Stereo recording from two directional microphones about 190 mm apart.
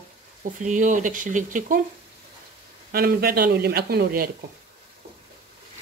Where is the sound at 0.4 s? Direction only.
40° right (ahead or behind).